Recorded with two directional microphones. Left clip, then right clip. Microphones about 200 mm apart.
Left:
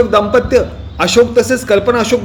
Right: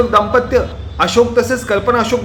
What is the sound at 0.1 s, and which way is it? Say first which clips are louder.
A man's voice: left 2 dB; 15° left (ahead or behind).